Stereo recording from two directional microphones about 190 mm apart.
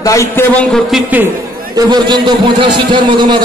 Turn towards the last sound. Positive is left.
turn(degrees=-25)  # may be behind; listen again after turning